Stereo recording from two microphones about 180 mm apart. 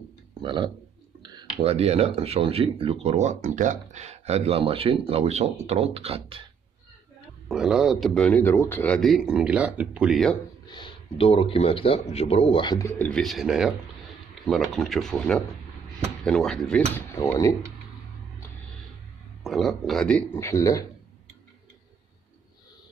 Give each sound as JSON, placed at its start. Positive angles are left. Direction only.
{"t": 0.4, "sound": "burping", "side_deg": -25}
{"t": 1.2, "sound": "speech", "side_deg": -25}
{"t": 7.4, "sound": "speech", "side_deg": -5}
{"t": 10.7, "sound": "speech", "side_deg": 25}
{"t": 12.8, "sound": "speech", "side_deg": 10}
{"t": 19.4, "sound": "speech", "side_deg": 0}